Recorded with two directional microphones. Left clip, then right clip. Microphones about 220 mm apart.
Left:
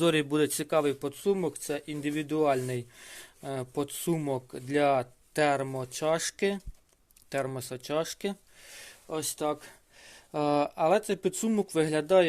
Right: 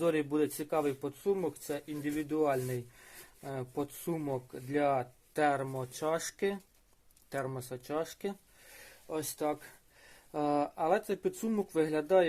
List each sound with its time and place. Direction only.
0.0 s speech: 40° left (ahead or behind)